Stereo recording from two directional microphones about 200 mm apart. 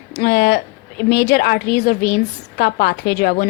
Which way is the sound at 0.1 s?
55° left (ahead or behind).